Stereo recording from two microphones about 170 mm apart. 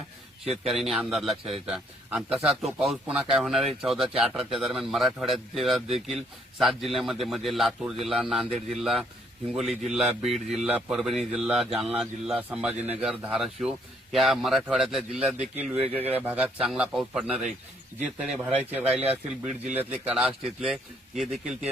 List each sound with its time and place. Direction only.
0.4 s a man's voice: 35° right (ahead or behind)
0.7 s a man's voice: centre (ahead or behind)